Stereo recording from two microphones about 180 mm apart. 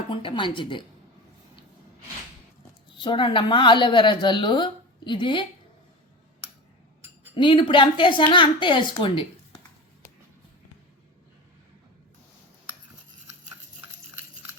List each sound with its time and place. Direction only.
0.1 s a woman's voice: 30° left (ahead or behind)
3.0 s a woman's voice: 25° left (ahead or behind)
7.3 s a woman's voice: 25° left (ahead or behind)